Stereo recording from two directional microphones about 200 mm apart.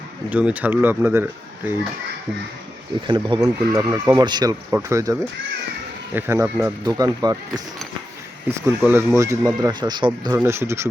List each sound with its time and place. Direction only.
0.3 s speech: 5° right (ahead or behind)
3.1 s speech: 20° right (ahead or behind)